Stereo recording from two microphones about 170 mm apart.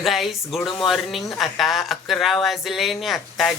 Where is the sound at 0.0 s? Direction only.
Centre (ahead or behind).